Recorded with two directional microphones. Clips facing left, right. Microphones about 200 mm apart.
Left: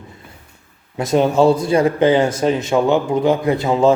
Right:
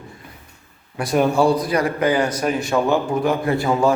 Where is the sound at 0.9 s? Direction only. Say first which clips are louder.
Left 3 dB; 20° left (ahead or behind).